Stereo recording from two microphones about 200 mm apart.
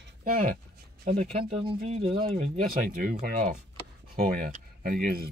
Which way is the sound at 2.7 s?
45° right (ahead or behind).